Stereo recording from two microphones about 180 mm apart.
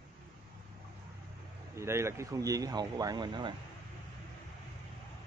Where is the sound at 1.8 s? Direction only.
15° right (ahead or behind).